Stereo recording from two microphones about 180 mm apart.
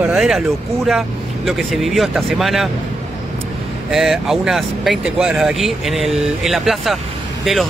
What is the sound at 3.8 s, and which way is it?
Speech, centre (ahead or behind).